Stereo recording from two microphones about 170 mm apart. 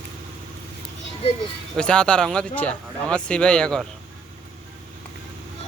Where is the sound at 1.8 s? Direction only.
5° left (ahead or behind).